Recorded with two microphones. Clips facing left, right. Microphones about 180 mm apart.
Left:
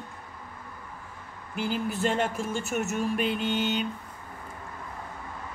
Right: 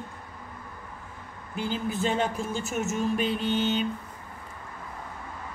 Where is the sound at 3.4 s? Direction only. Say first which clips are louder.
Right 1 dB; 35° right (ahead or behind).